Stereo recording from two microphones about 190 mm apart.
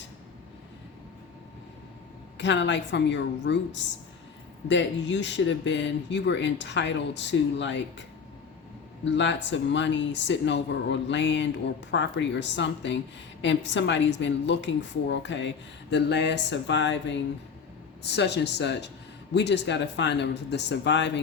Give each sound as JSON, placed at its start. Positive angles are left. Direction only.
{"t": 2.4, "sound": "a woman's voice", "side_deg": 70}
{"t": 9.0, "sound": "a woman's voice", "side_deg": 70}
{"t": 18.0, "sound": "a woman's voice", "side_deg": 65}